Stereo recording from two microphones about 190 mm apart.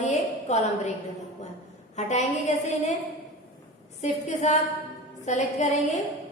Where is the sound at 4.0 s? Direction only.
35° left (ahead or behind).